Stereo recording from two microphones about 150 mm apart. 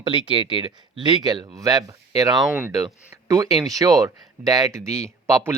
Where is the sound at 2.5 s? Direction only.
10° right (ahead or behind).